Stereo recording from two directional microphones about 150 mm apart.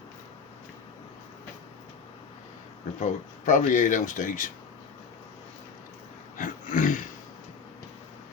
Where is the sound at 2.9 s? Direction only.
55° left (ahead or behind).